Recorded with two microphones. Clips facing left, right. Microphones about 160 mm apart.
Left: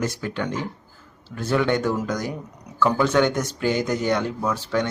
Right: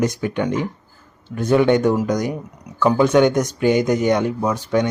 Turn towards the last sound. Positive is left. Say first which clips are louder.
# right 5 dB
turn(degrees=-15)  # may be behind; listen again after turning